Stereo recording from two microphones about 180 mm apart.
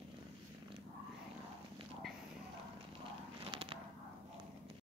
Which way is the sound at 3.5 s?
30° right (ahead or behind).